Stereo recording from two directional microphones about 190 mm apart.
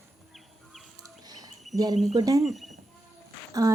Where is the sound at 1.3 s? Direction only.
20° right (ahead or behind).